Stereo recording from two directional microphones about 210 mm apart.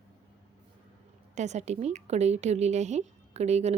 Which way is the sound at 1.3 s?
35° right (ahead or behind).